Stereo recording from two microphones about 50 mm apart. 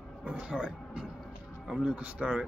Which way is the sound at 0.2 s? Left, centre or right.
Right.